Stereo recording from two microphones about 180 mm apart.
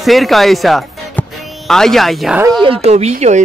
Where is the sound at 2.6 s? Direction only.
35° right (ahead or behind).